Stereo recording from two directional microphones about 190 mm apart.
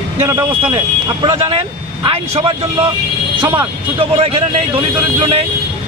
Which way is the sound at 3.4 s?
10° right (ahead or behind).